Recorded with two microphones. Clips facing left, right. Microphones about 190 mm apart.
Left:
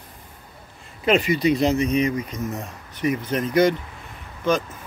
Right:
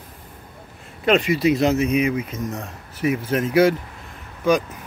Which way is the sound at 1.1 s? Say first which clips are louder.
Right 1 dB; centre (ahead or behind).